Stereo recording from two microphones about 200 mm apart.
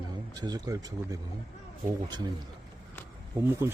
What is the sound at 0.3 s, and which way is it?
Speech, 20° right (ahead or behind).